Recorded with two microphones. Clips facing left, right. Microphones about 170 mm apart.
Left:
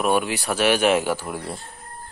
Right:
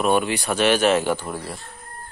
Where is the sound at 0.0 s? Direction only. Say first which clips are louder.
Right 1 dB; 5° left (ahead or behind).